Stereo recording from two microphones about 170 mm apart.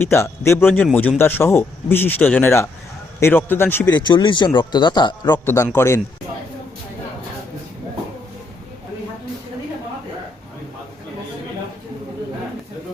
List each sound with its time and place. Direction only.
0.0 s speech: 15° left (ahead or behind)
3.9 s speech: 25° left (ahead or behind)